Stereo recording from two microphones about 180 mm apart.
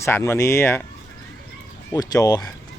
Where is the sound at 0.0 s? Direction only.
15° left (ahead or behind).